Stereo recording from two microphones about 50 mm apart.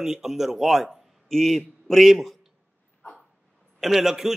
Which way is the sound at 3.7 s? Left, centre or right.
Centre.